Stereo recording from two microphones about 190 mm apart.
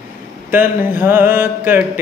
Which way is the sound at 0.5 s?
10° right (ahead or behind).